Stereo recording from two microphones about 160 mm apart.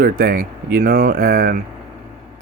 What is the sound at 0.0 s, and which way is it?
Speech, 65° right (ahead or behind).